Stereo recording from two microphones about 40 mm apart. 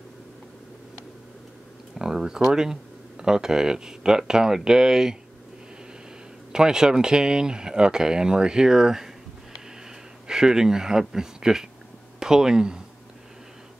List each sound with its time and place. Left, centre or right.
2.0 s speech: centre
6.5 s speech: centre
10.2 s speech: centre